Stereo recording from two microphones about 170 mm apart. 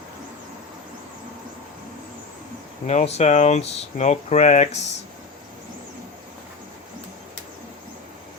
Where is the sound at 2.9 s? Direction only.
40° left (ahead or behind).